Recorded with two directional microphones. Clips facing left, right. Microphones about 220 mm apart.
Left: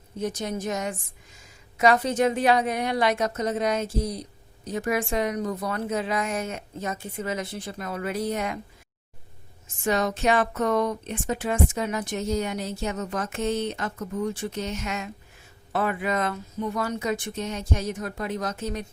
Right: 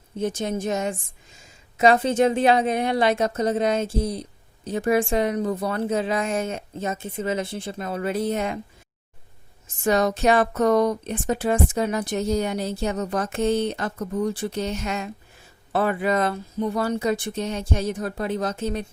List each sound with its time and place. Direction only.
0.2 s a woman's voice: 30° right (ahead or behind)
9.8 s speech: 40° right (ahead or behind)